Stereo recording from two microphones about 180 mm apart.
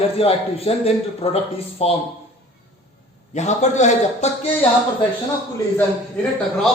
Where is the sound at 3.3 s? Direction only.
40° left (ahead or behind).